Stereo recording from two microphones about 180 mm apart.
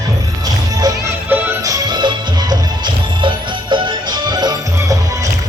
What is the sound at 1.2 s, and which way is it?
Music, 15° right (ahead or behind).